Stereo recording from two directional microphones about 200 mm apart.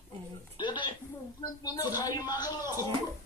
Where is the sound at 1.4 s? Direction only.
20° left (ahead or behind).